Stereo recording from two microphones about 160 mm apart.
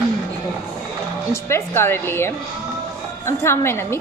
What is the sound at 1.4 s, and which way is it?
Speech, 15° left (ahead or behind).